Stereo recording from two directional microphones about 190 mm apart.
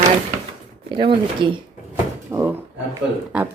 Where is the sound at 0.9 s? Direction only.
25° right (ahead or behind).